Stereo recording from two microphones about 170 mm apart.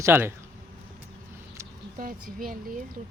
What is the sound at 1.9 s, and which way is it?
Speech, 55° right (ahead or behind).